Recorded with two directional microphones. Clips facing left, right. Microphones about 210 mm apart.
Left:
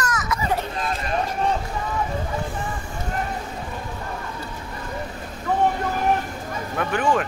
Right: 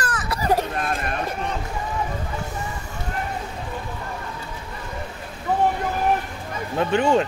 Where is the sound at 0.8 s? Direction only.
55° right (ahead or behind).